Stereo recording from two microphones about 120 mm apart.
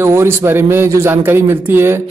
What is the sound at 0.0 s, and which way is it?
Speech, 20° right (ahead or behind).